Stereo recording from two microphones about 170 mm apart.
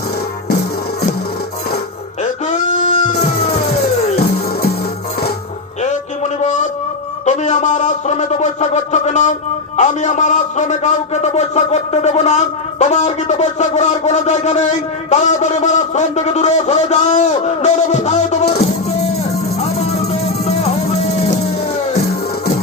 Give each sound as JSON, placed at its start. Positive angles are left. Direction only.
{"t": 3.5, "sound": "music", "side_deg": 70}
{"t": 5.8, "sound": "a sound", "side_deg": 45}
{"t": 9.7, "sound": "a man's voice", "side_deg": 45}
{"t": 19.8, "sound": "music", "side_deg": 40}